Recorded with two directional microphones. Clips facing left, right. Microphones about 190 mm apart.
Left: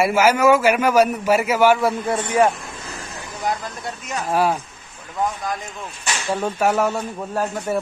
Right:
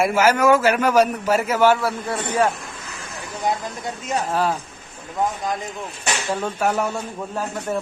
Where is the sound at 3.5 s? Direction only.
20° right (ahead or behind).